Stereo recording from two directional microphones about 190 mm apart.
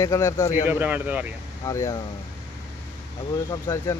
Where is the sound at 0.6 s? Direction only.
10° right (ahead or behind).